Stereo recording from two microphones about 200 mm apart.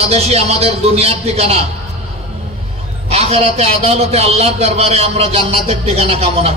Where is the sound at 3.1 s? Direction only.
30° right (ahead or behind).